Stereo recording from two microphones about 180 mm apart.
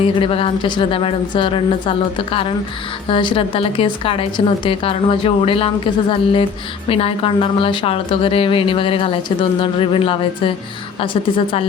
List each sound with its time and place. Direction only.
0.0 s a woman's voice: 30° left (ahead or behind)